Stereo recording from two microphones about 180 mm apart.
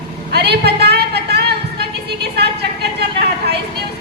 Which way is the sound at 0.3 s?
65° right (ahead or behind).